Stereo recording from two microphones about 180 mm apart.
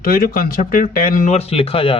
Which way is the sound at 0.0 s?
55° left (ahead or behind).